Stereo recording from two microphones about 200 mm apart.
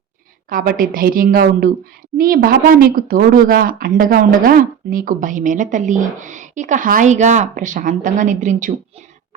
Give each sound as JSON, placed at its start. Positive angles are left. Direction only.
{"t": 0.5, "sound": "a woman's voice", "side_deg": -45}